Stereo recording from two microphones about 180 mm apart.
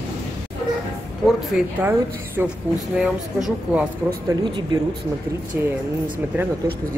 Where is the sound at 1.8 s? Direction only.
10° right (ahead or behind).